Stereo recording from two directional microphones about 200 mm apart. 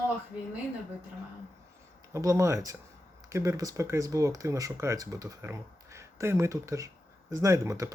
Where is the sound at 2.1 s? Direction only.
15° right (ahead or behind).